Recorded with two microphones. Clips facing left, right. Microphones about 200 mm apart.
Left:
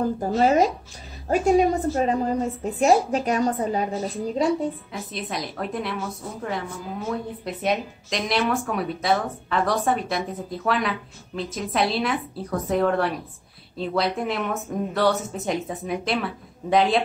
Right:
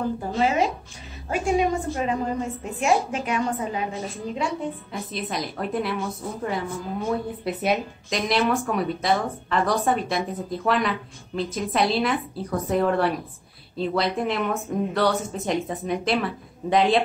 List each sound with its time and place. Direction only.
0.2 s a woman's voice: 40° left (ahead or behind)
4.9 s speech: centre (ahead or behind)